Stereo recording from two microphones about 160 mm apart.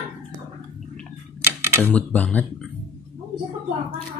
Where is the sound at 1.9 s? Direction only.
10° left (ahead or behind).